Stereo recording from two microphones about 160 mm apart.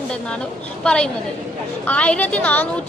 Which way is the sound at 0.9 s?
5° left (ahead or behind).